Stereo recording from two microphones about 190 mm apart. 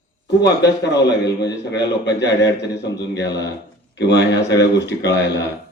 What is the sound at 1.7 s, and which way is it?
A man's voice, 65° left (ahead or behind).